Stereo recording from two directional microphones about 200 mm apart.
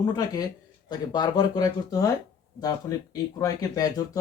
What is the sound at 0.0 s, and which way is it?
Speech, 20° left (ahead or behind).